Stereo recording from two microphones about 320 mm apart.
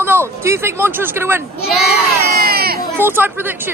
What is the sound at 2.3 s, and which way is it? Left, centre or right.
Baby cry, right.